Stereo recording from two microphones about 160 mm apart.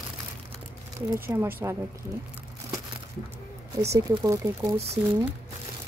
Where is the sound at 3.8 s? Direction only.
20° right (ahead or behind).